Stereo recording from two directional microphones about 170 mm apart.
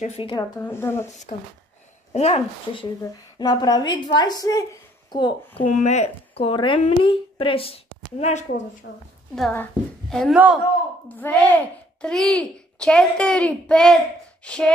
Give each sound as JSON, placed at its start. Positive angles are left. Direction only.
{"t": 0.0, "sound": "speech", "side_deg": 35}
{"t": 0.6, "sound": "speech", "side_deg": 15}
{"t": 2.1, "sound": "speech", "side_deg": 40}
{"t": 3.0, "sound": "a woman's voice", "side_deg": 20}
{"t": 5.6, "sound": "a woman's voice", "side_deg": 45}
{"t": 8.8, "sound": "a woman's voice", "side_deg": 90}
{"t": 9.3, "sound": "speech", "side_deg": 5}
{"t": 10.3, "sound": "a man's voice", "side_deg": -10}
{"t": 11.1, "sound": "speech", "side_deg": 10}